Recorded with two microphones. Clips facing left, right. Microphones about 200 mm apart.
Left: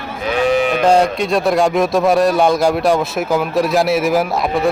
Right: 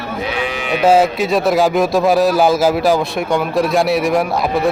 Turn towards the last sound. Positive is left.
turn(degrees=0)  # may be behind; listen again after turning